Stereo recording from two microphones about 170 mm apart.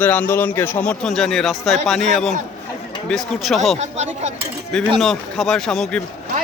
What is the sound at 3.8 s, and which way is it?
Speech, 40° right (ahead or behind).